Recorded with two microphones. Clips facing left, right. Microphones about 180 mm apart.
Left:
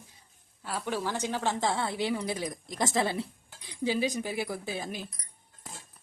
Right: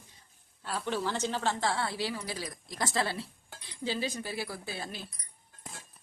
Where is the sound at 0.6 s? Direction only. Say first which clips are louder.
Even; 10° left (ahead or behind).